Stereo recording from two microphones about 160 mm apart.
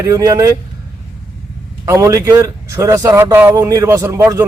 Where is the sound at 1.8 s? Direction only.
20° right (ahead or behind).